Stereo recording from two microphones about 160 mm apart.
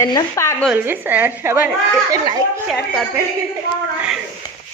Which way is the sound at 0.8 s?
10° right (ahead or behind).